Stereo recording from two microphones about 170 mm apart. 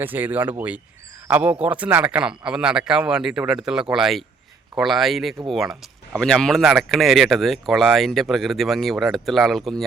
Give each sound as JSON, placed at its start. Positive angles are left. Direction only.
{"t": 0.0, "sound": "speech", "side_deg": -10}